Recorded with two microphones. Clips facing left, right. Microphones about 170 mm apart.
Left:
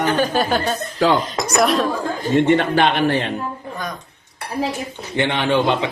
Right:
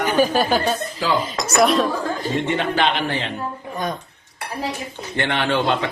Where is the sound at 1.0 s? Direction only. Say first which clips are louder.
Left 7 dB; 70° left (ahead or behind).